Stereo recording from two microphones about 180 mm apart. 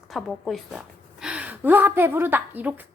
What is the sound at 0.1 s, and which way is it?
A woman's voice, centre (ahead or behind).